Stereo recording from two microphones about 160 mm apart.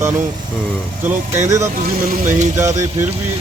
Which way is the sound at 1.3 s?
15° right (ahead or behind).